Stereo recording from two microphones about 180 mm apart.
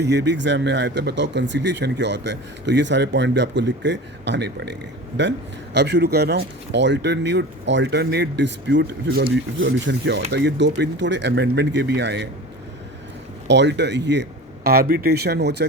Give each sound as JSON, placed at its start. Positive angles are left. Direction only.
{"t": 0.0, "sound": "speech", "side_deg": -70}
{"t": 9.3, "sound": "speech", "side_deg": -85}
{"t": 13.5, "sound": "speech", "side_deg": -75}